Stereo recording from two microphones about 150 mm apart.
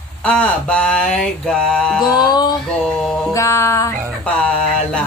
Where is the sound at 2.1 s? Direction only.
30° left (ahead or behind).